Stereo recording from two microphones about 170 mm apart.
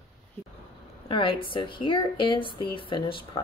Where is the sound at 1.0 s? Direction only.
30° left (ahead or behind).